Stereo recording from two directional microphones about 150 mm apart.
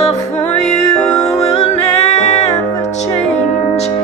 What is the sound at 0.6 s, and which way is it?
Music, 5° left (ahead or behind).